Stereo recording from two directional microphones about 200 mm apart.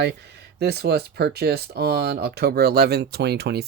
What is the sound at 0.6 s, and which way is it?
Speech, 55° right (ahead or behind).